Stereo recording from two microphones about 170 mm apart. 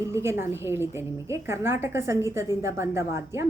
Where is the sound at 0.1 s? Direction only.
15° right (ahead or behind).